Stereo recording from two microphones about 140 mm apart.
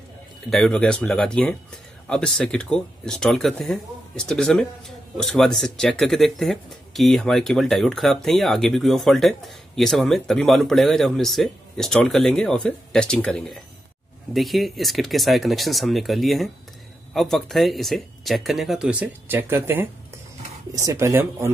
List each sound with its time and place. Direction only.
0.5 s speech: 5° left (ahead or behind); by 21.5 s 20° right (ahead or behind)